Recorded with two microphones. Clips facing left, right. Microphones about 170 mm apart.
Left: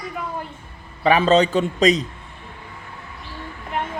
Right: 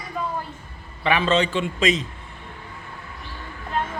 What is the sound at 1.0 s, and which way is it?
Mantra, 40° left (ahead or behind).